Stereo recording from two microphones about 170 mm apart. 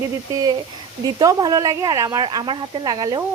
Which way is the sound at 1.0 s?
20° right (ahead or behind).